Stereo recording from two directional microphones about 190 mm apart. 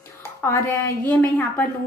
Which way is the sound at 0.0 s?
10° left (ahead or behind).